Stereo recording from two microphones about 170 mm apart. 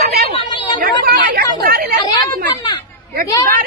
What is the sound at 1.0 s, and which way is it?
Speech, 65° right (ahead or behind).